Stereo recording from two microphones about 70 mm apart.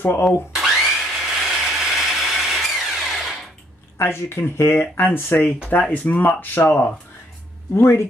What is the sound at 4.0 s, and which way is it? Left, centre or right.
Speech, left.